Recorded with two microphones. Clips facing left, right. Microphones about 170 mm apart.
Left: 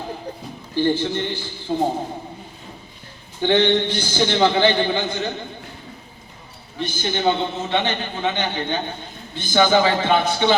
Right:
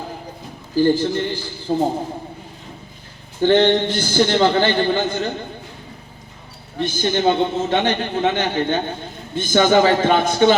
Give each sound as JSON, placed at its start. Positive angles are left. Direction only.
{"t": 0.8, "sound": "a man's voice", "side_deg": -40}
{"t": 3.4, "sound": "a man's voice", "side_deg": -45}
{"t": 6.7, "sound": "a man's voice", "side_deg": -45}